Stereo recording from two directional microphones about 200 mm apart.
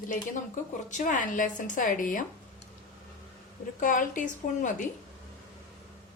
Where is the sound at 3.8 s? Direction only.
40° left (ahead or behind).